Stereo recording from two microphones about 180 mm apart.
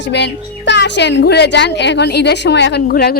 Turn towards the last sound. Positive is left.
turn(degrees=60)  # may be behind; listen again after turning